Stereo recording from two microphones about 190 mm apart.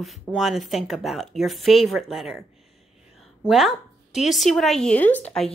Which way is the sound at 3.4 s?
Centre (ahead or behind).